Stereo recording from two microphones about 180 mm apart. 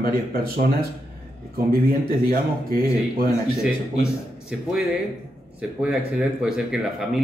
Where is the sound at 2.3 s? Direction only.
55° right (ahead or behind).